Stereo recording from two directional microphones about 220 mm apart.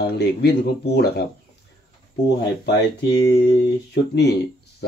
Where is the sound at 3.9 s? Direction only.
50° left (ahead or behind).